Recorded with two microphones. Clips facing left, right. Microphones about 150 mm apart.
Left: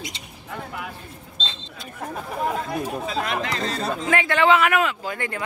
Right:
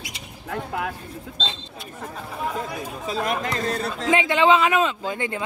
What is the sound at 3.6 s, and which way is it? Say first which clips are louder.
Speech: right 1 dB; 55° right (ahead or behind).